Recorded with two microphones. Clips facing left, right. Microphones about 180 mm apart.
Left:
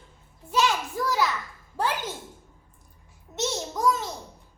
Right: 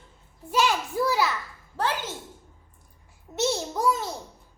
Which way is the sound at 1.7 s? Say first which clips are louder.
Even; 10° left (ahead or behind).